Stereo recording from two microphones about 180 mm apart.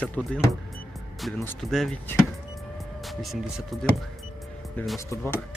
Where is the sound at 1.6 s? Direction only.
Centre (ahead or behind).